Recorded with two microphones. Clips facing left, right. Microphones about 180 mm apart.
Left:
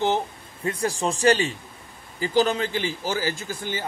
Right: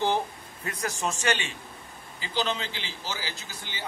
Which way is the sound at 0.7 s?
30° left (ahead or behind).